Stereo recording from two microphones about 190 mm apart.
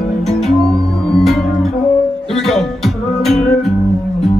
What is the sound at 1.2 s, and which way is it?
Music, centre (ahead or behind).